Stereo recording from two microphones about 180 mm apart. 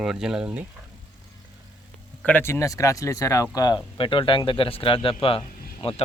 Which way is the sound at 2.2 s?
10° left (ahead or behind).